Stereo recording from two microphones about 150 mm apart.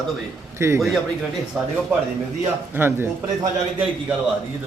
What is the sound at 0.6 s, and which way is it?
Speech, 20° right (ahead or behind).